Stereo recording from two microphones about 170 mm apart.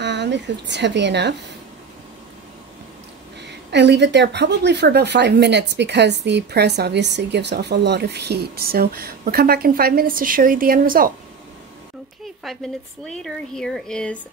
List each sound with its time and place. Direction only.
0.0 s speech: 90° right
3.4 s a woman's voice: 90° right; by 11.1 s 55° right (ahead or behind)
12.4 s speech: 5° left (ahead or behind)